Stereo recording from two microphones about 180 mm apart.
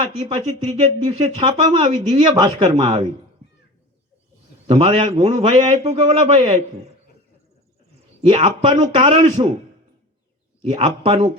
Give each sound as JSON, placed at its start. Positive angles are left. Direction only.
{"t": 0.0, "sound": "speech", "side_deg": -35}
{"t": 2.3, "sound": "a man's voice", "side_deg": -20}
{"t": 4.6, "sound": "a man's voice", "side_deg": -35}
{"t": 8.3, "sound": "speech", "side_deg": -35}
{"t": 10.6, "sound": "speech", "side_deg": -35}